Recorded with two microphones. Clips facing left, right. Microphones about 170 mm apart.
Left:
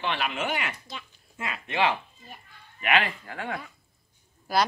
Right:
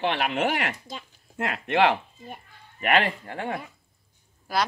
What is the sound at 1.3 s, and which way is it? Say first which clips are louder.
Speech: right 6 dB; 65° right (ahead or behind).